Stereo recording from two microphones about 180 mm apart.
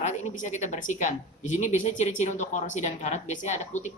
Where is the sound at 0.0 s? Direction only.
40° left (ahead or behind).